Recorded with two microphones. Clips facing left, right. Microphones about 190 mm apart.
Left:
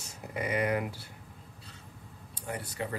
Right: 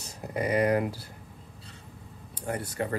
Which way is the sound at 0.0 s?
35° right (ahead or behind).